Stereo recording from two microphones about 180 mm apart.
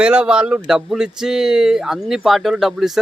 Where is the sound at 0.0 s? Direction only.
5° right (ahead or behind).